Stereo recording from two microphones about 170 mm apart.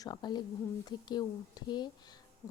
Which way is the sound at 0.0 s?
25° left (ahead or behind).